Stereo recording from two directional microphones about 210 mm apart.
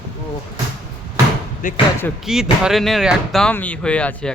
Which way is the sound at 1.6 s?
40° left (ahead or behind).